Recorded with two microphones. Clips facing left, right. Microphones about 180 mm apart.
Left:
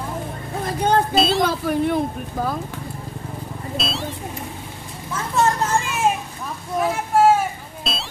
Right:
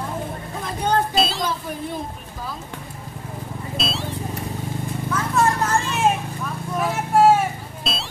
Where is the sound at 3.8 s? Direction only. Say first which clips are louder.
Even; centre (ahead or behind).